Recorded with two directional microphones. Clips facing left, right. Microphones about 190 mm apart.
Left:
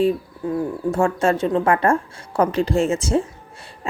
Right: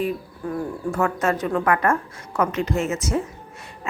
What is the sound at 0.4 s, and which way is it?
A woman's voice, 20° left (ahead or behind).